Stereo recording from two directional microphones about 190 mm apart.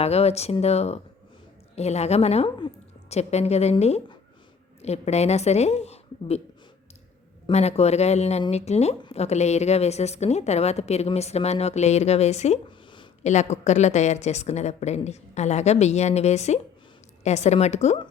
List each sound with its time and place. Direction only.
0.0 s a woman's voice: 35° left (ahead or behind)
7.4 s speech: 35° left (ahead or behind)